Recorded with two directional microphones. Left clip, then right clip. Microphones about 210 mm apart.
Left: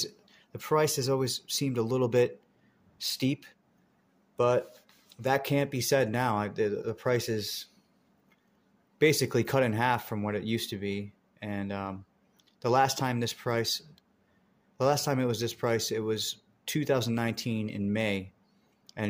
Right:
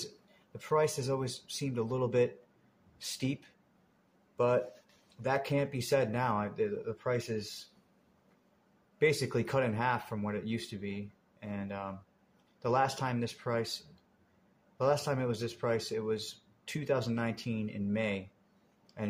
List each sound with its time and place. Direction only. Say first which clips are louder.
0.0 s speech: left 8 dB; 40° left (ahead or behind)
5.1 s speech: left 4 dB; 40° left (ahead or behind)
8.9 s speech: left 5 dB; 40° left (ahead or behind)
14.8 s speech: left 3 dB; 40° left (ahead or behind)